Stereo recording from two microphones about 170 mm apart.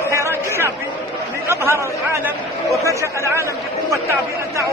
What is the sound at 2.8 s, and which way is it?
Speech, 15° right (ahead or behind).